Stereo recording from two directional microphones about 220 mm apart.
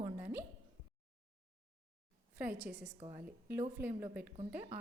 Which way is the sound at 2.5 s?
5° right (ahead or behind).